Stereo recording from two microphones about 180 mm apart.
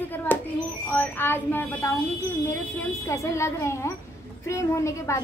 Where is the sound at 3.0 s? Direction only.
15° left (ahead or behind).